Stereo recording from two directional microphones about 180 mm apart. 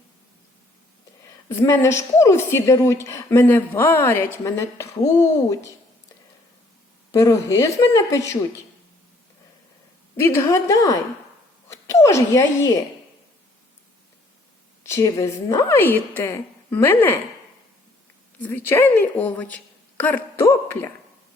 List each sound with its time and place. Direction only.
1.5 s a woman's voice: 15° left (ahead or behind)
7.1 s a woman's voice: 20° left (ahead or behind)
10.2 s a woman's voice: 15° left (ahead or behind)
14.8 s a woman's voice: 15° left (ahead or behind)
18.4 s a woman's voice: 10° left (ahead or behind)